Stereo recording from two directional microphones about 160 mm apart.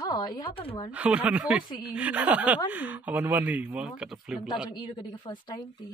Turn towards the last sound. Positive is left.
turn(degrees=30)  # may be behind; listen again after turning